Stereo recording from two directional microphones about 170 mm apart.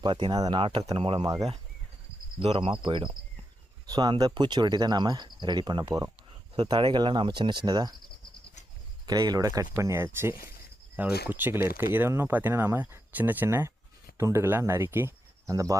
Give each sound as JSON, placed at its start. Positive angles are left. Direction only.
{"t": 0.0, "sound": "speech", "side_deg": -30}
{"t": 9.0, "sound": "speech", "side_deg": -25}